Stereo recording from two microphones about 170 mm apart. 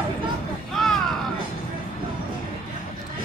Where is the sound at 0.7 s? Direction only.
Centre (ahead or behind).